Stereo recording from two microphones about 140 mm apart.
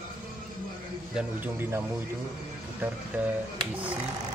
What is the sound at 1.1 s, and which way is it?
Speech, 15° right (ahead or behind).